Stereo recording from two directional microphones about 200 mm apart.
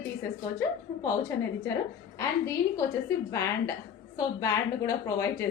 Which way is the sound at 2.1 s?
15° left (ahead or behind).